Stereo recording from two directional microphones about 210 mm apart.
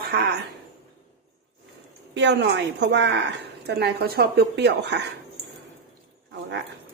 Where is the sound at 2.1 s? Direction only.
55° right (ahead or behind).